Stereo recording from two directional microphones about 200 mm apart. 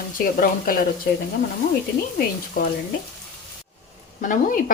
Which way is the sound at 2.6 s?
45° left (ahead or behind).